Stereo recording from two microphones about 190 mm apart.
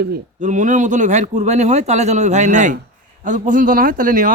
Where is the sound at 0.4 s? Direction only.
40° right (ahead or behind).